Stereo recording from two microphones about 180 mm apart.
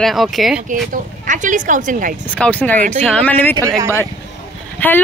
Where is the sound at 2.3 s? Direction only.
10° left (ahead or behind).